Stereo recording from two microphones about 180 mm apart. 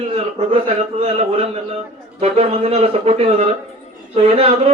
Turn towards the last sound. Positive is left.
turn(degrees=-35)  # may be behind; listen again after turning